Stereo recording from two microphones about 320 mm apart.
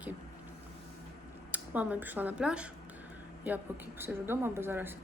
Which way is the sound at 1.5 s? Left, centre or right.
Centre.